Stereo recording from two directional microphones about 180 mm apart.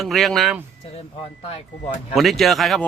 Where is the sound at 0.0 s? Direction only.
Centre (ahead or behind).